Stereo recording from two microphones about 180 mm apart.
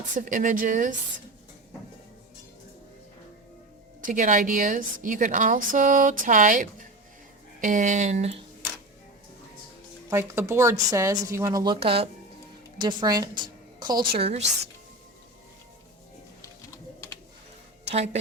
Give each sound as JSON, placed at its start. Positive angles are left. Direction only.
{"t": 0.1, "sound": "a woman's voice", "side_deg": -45}
{"t": 4.0, "sound": "a woman's voice", "side_deg": -45}
{"t": 10.1, "sound": "a woman's voice", "side_deg": -15}
{"t": 17.9, "sound": "a woman's voice", "side_deg": -40}